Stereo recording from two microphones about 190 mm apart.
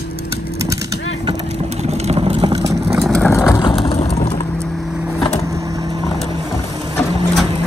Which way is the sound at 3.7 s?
30° left (ahead or behind).